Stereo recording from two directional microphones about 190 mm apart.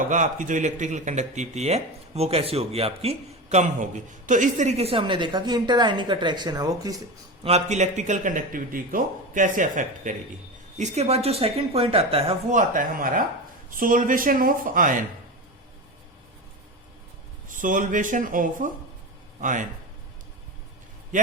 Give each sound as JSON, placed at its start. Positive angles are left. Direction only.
{"t": 0.1, "sound": "a woman's voice", "side_deg": -40}
{"t": 7.4, "sound": "speech", "side_deg": -35}
{"t": 17.5, "sound": "speech", "side_deg": -45}